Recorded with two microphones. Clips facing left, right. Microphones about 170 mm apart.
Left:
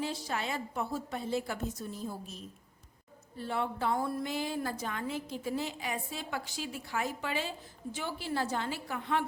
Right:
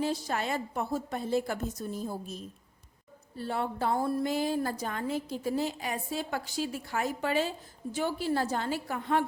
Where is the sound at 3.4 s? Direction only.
40° right (ahead or behind).